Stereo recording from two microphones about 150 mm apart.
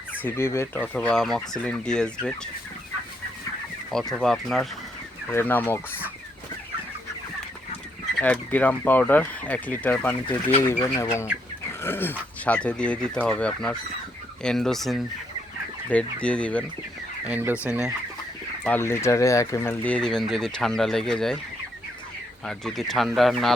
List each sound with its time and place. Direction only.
0.2 s speech: 15° left (ahead or behind)
4.1 s speech: 5° left (ahead or behind)
5.3 s speech: 15° left (ahead or behind)
8.2 s speech: 10° left (ahead or behind)
17.2 s speech: 10° right (ahead or behind)
18.6 s speech: 15° left (ahead or behind)
19.8 s speech: 5° left (ahead or behind)
22.4 s speech: 5° left (ahead or behind)